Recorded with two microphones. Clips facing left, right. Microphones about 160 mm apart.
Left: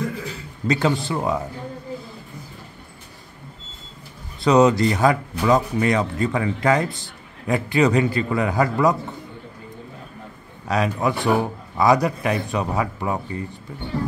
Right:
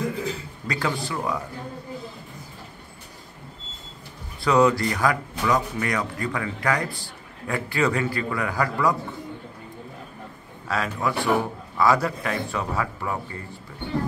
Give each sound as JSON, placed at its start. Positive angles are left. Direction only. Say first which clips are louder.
{"t": 0.7, "sound": "speech", "louder": "left 7 dB", "side_deg": 25}
{"t": 4.4, "sound": "speech", "louder": "left 4 dB", "side_deg": 20}
{"t": 10.7, "sound": "speech", "louder": "left 4 dB", "side_deg": 20}